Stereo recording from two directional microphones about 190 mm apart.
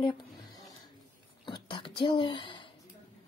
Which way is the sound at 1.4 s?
25° left (ahead or behind).